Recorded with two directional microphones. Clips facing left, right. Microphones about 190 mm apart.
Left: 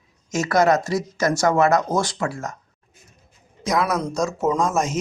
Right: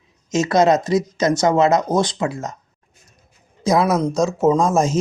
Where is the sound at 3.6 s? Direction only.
30° right (ahead or behind).